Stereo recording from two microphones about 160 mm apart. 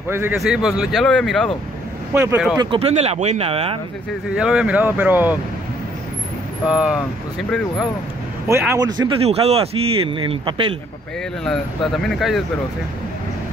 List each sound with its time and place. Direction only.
0.1 s speech: 15° right (ahead or behind)
0.4 s speech: 5° right (ahead or behind)
2.6 s a man's voice: 35° right (ahead or behind)
4.4 s speech: 5° right (ahead or behind)
6.6 s speech: 5° right (ahead or behind)
8.5 s a man's voice: 15° right (ahead or behind)
9.2 s a man's voice: 40° right (ahead or behind)
11.4 s speech: 5° left (ahead or behind)